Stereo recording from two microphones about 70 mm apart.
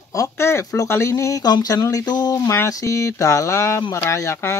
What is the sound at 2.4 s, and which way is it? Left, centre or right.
Speech, left.